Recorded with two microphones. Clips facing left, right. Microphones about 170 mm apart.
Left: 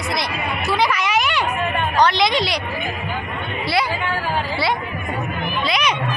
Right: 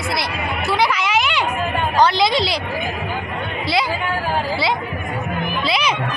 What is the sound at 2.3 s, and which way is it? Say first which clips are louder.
Speech: right 1 dB; 30° right (ahead or behind).